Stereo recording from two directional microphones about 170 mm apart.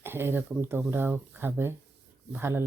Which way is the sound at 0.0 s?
15° right (ahead or behind).